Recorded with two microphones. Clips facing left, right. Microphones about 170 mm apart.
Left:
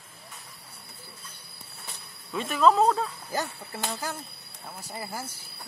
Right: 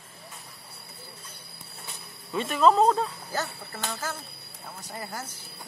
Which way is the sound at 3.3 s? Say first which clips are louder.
Left 2 dB; 15° left (ahead or behind).